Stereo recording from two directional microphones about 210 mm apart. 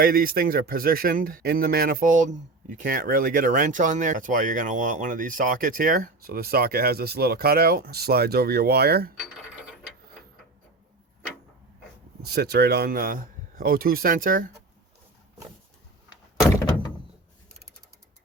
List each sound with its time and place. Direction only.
0.0 s speech: 45° right (ahead or behind)
12.2 s speech: 50° right (ahead or behind)